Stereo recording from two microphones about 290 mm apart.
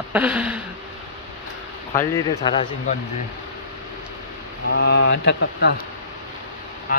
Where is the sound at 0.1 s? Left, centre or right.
Centre.